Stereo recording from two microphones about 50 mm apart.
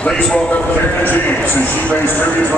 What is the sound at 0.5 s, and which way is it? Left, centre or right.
Speech, left.